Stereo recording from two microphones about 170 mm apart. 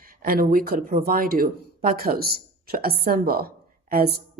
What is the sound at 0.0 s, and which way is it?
A woman's voice, 55° right (ahead or behind).